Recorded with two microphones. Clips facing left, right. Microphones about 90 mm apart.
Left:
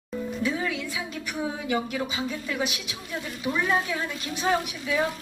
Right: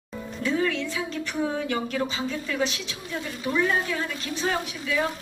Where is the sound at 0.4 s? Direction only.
10° left (ahead or behind).